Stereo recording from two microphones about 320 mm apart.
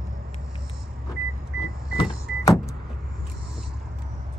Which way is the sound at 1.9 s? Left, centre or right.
Centre.